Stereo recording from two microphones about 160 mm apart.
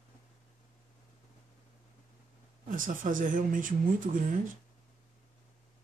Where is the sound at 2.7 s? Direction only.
55° right (ahead or behind).